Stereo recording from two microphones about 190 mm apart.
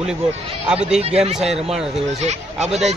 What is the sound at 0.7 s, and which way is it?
Speech, 5° right (ahead or behind).